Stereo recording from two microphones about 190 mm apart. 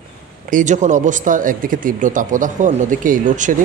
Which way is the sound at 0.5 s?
40° right (ahead or behind).